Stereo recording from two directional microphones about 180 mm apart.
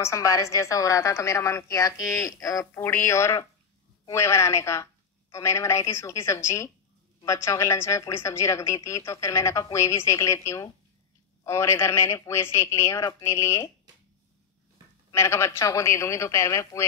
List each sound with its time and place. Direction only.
0.0 s a woman's voice: 15° left (ahead or behind)
15.0 s a woman's voice: 15° left (ahead or behind)